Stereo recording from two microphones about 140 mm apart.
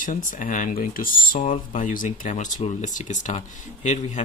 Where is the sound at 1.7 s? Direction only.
70° left (ahead or behind).